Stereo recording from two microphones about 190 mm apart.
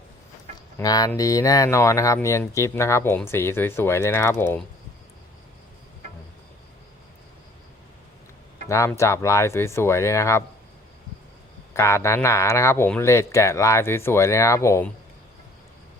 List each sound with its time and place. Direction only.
0.8 s speech: 20° left (ahead or behind)
8.7 s speech: 15° left (ahead or behind)
11.7 s speech: 15° left (ahead or behind)